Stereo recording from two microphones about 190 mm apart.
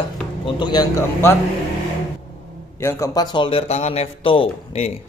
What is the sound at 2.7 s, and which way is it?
A man's voice, 15° left (ahead or behind).